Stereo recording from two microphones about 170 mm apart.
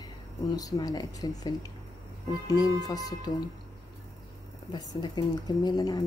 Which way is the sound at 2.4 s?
20° left (ahead or behind).